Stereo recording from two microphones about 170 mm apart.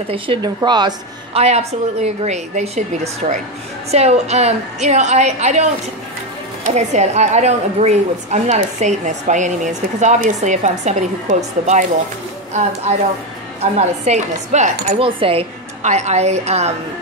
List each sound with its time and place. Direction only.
0.1 s speech: 30° right (ahead or behind)
1.4 s speech: 40° right (ahead or behind)
6.7 s a woman's voice: 40° right (ahead or behind)
13.6 s speech: 40° right (ahead or behind)